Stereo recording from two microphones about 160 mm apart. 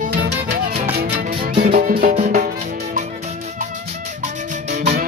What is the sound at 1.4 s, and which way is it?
Music, 70° right (ahead or behind).